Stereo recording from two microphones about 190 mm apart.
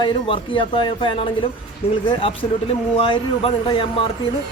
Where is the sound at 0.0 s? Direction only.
25° left (ahead or behind).